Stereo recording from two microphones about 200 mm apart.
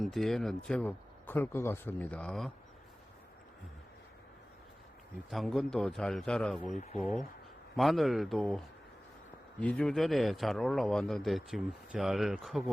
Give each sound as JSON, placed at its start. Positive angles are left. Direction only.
{"t": 0.0, "sound": "speech", "side_deg": 0}
{"t": 5.3, "sound": "a man's voice", "side_deg": 0}
{"t": 7.8, "sound": "a man's voice", "side_deg": 0}